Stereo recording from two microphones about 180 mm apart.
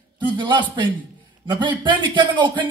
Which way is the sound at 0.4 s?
25° right (ahead or behind).